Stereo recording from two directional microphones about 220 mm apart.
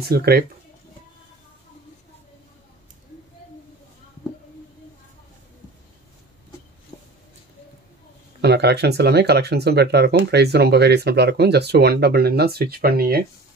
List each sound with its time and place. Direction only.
0.1 s speech: 45° right (ahead or behind)
8.4 s speech: 50° right (ahead or behind)